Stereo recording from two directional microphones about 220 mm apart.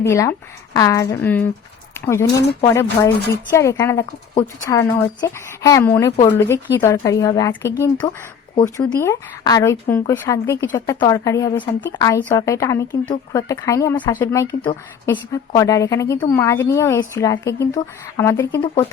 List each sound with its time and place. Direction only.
0.0 s speech: 15° left (ahead or behind)
1.9 s a sound: 10° left (ahead or behind)
2.6 s speech: 15° left (ahead or behind)